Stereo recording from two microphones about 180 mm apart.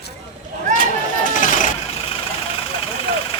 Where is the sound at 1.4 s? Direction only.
45° left (ahead or behind).